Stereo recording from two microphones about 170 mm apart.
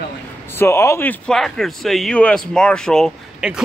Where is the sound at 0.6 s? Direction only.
15° left (ahead or behind).